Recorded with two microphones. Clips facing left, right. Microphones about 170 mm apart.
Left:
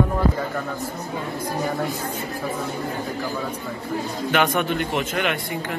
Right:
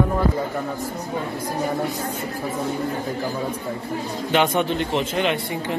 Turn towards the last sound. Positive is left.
turn(degrees=-25)  # may be behind; listen again after turning